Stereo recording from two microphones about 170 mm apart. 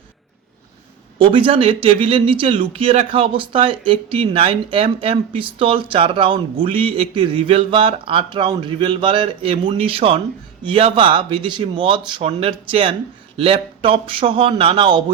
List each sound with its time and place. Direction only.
1.2 s speech: 30° right (ahead or behind)